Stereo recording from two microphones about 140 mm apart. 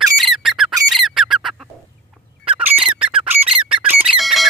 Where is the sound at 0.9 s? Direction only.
Centre (ahead or behind).